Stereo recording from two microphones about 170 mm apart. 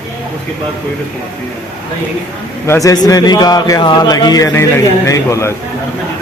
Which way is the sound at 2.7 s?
20° left (ahead or behind).